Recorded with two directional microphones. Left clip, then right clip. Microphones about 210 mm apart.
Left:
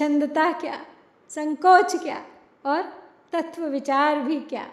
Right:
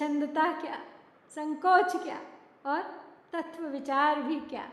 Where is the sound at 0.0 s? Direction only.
30° left (ahead or behind).